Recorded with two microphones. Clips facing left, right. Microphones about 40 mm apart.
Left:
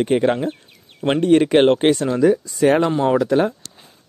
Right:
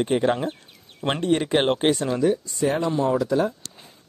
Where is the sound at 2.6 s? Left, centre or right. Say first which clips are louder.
Left 7 dB; left.